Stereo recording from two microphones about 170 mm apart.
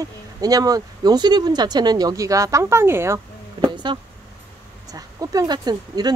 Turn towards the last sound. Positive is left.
turn(degrees=-25)  # may be behind; listen again after turning